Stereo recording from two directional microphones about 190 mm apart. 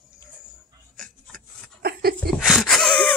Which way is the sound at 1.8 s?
55° right (ahead or behind).